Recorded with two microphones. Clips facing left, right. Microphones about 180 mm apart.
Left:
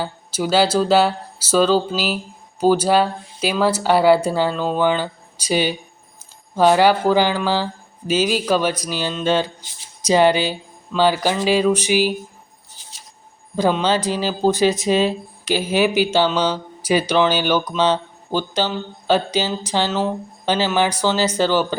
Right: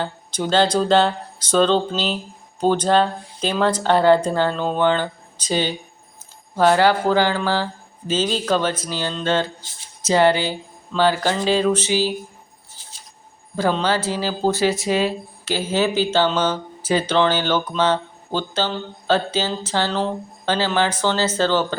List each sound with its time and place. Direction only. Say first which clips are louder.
0.0 s speech: left 1 dB; 5° left (ahead or behind)
13.6 s speech: left 2 dB; 15° left (ahead or behind)